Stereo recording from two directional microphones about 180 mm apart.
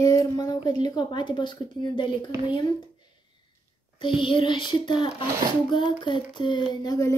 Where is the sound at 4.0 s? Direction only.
25° left (ahead or behind).